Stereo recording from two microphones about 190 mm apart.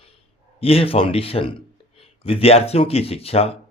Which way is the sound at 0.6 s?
30° left (ahead or behind).